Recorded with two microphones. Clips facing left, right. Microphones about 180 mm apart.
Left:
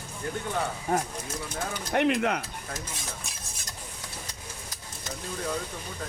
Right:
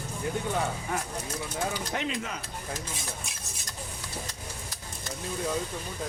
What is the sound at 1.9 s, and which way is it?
Speech, 65° left (ahead or behind).